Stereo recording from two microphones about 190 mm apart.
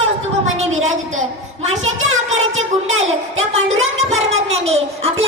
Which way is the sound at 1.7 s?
90° right.